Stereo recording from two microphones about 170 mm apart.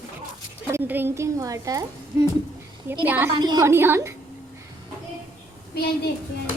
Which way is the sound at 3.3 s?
20° right (ahead or behind).